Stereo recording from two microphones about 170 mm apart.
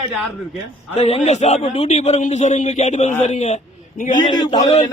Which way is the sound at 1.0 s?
40° left (ahead or behind).